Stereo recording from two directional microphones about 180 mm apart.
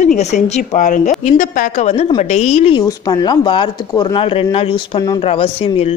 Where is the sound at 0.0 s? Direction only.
40° left (ahead or behind).